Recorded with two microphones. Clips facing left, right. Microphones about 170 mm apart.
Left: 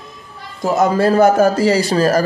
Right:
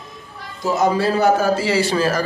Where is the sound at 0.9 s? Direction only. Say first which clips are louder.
Left 4 dB; 45° left (ahead or behind).